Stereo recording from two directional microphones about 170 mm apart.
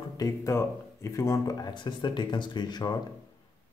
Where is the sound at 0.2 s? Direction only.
15° left (ahead or behind).